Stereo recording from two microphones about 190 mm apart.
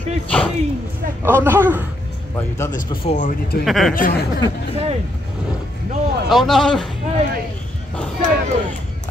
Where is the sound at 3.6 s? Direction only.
Centre (ahead or behind).